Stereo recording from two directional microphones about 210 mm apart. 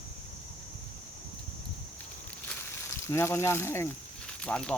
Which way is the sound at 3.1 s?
10° left (ahead or behind).